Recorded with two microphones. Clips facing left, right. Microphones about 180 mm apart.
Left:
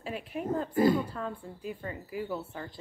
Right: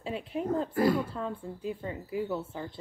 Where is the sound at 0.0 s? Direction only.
25° right (ahead or behind).